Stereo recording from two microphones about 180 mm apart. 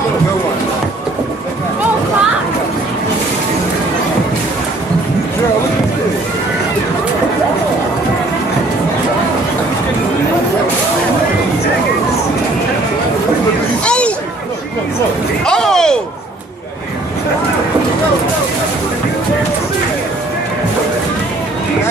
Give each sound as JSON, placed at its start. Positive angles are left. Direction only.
{"t": 13.8, "sound": "hubbub", "side_deg": 5}
{"t": 15.4, "sound": "slam", "side_deg": 5}